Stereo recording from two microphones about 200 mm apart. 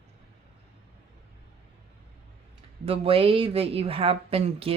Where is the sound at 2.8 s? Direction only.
30° right (ahead or behind).